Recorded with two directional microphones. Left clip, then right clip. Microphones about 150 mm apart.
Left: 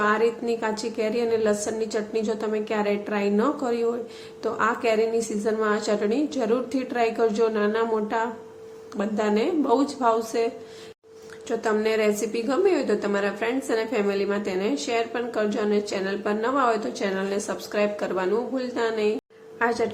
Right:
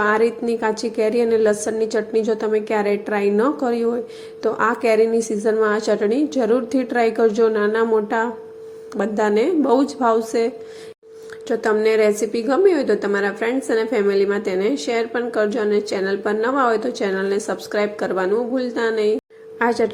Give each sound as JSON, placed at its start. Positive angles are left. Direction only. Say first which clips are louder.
{"t": 0.0, "sound": "a woman's voice", "louder": "right 4 dB", "side_deg": -35}